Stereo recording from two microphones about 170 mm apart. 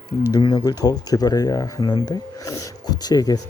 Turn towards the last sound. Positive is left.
turn(degrees=20)  # may be behind; listen again after turning